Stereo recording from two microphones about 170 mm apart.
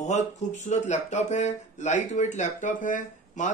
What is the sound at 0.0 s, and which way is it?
Speech, 40° left (ahead or behind).